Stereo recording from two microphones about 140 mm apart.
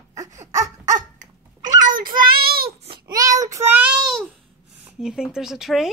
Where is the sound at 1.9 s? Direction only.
85° right.